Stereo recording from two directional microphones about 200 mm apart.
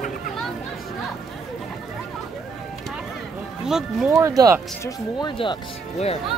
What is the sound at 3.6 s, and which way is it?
Speech, centre (ahead or behind).